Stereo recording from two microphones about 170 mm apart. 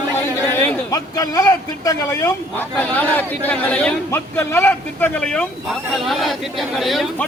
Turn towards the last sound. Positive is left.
turn(degrees=0)  # may be behind; listen again after turning